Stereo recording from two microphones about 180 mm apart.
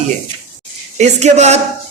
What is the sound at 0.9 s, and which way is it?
Speech, 40° right (ahead or behind).